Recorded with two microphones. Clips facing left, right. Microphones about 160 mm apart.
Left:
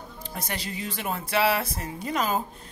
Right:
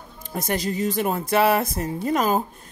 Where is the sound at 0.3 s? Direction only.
45° right (ahead or behind).